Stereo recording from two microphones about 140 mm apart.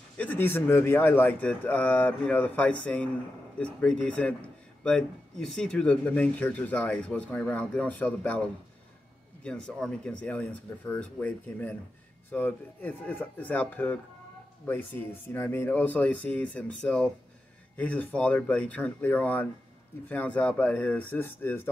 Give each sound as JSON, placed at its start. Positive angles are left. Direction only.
{"t": 0.2, "sound": "speech", "side_deg": 15}